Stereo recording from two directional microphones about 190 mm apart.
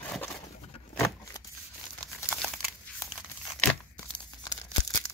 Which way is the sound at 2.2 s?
Centre (ahead or behind).